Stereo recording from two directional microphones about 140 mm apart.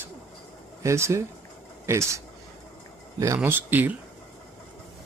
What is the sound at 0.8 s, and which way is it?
Speech, 20° right (ahead or behind).